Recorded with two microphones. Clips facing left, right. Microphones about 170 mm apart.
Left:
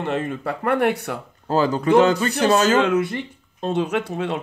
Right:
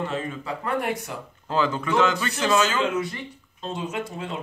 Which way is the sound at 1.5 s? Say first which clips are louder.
Left 7 dB; 40° left (ahead or behind).